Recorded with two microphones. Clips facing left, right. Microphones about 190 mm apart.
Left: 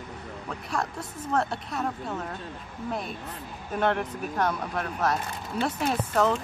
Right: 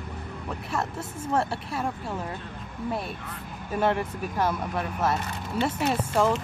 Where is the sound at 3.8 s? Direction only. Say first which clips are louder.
Right 1 dB; 5° right (ahead or behind).